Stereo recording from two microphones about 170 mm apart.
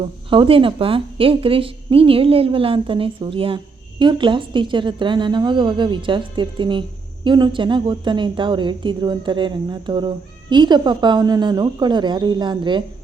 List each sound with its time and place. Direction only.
0.0 s speech: 30° right (ahead or behind)